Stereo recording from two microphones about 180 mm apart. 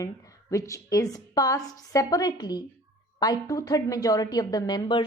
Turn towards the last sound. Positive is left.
turn(degrees=25)  # may be behind; listen again after turning